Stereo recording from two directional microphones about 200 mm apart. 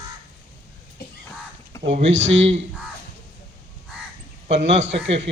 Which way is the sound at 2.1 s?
65° right (ahead or behind).